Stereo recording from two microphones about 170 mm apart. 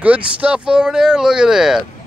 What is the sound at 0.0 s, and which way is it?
Speech, 10° right (ahead or behind).